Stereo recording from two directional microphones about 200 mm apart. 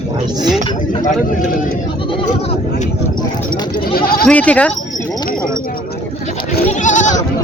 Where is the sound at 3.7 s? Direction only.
50° left (ahead or behind).